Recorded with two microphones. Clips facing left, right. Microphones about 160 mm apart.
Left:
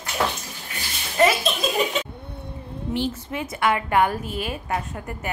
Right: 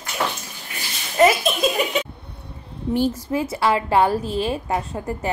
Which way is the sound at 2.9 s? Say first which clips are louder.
Right 6 dB; 40° right (ahead or behind).